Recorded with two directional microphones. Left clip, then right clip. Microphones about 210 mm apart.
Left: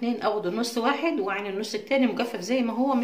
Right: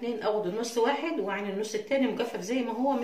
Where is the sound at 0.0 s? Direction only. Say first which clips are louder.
Left 3 dB; 50° left (ahead or behind).